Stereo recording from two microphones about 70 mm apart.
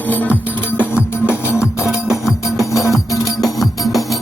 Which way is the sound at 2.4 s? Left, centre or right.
Left.